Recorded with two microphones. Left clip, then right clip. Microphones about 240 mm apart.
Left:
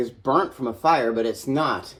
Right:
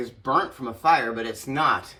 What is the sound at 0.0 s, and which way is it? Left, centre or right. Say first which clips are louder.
Speech: left 2 dB; centre.